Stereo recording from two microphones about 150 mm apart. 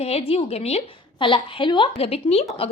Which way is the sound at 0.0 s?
40° left (ahead or behind).